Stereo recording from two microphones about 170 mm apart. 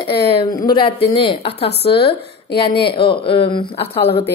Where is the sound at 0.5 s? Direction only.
25° left (ahead or behind).